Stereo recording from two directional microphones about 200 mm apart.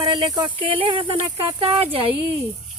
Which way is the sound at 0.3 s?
25° right (ahead or behind).